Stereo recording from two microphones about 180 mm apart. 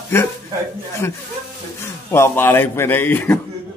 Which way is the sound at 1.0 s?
10° left (ahead or behind).